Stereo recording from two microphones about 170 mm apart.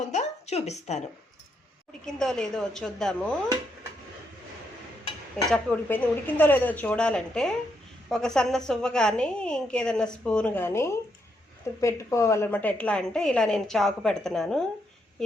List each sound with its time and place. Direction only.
0.0 s a sound: 45° left (ahead or behind)
2.0 s a woman's voice: 5° left (ahead or behind)
5.5 s a woman's voice: 10° left (ahead or behind)